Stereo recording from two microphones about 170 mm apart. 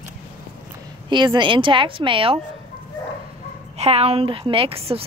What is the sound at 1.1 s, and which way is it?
Speech, 25° right (ahead or behind).